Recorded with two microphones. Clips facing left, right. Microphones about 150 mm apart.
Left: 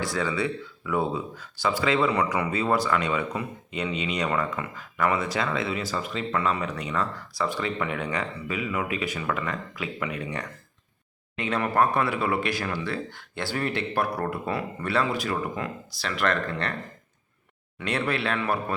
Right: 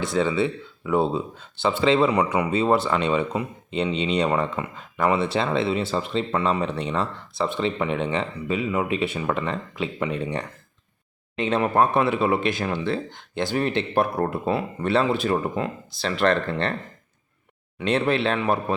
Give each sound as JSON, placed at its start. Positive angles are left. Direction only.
{"t": 0.0, "sound": "speech", "side_deg": -20}
{"t": 17.7, "sound": "speech", "side_deg": -25}